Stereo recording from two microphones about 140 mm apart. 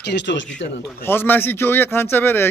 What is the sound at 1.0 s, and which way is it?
Speech, 15° left (ahead or behind).